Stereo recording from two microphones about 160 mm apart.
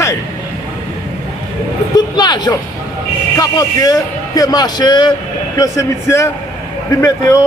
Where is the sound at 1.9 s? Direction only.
25° left (ahead or behind).